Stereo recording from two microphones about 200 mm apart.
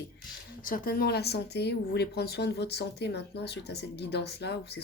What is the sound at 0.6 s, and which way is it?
Speech, 45° left (ahead or behind).